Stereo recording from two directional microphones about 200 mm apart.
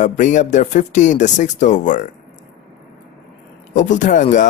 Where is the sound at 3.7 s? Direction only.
40° left (ahead or behind).